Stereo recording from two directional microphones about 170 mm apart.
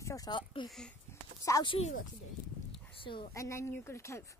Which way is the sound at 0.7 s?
5° left (ahead or behind).